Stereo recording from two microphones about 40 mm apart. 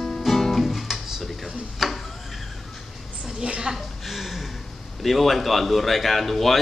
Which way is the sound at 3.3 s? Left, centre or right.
Centre.